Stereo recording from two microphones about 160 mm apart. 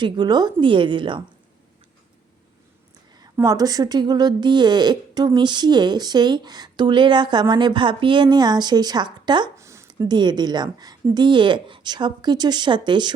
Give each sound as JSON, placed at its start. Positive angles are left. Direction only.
{"t": 0.0, "sound": "speech", "side_deg": -25}
{"t": 3.3, "sound": "speech", "side_deg": -20}